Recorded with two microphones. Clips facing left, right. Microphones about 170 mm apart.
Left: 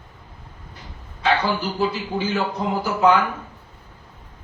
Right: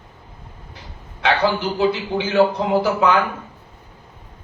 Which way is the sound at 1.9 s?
80° right.